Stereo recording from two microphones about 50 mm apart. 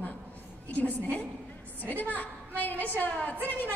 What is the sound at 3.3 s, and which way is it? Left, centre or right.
Speech, right.